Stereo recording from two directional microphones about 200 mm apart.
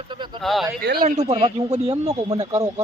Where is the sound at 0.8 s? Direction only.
50° right (ahead or behind).